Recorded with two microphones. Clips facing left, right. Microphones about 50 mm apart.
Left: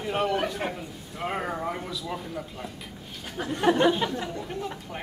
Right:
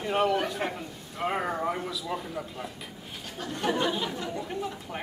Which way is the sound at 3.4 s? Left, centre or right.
Centre.